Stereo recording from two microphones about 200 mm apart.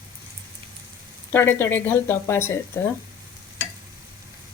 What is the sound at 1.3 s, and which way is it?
Speech, 10° left (ahead or behind).